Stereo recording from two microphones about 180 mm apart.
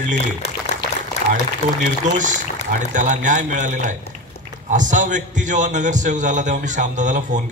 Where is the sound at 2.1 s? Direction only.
45° right (ahead or behind).